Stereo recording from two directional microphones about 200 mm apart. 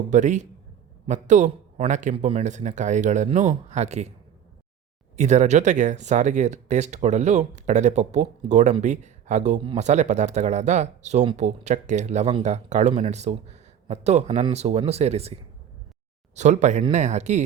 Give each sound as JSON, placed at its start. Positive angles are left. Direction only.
{"t": 0.1, "sound": "a man's voice", "side_deg": -35}
{"t": 5.1, "sound": "speech", "side_deg": -35}